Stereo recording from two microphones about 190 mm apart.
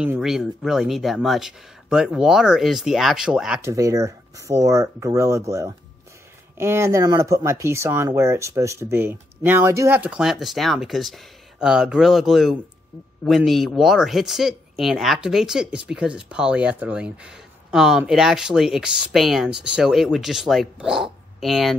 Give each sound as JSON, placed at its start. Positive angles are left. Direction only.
{"t": 0.0, "sound": "speech", "side_deg": -5}
{"t": 3.6, "sound": "speech", "side_deg": -15}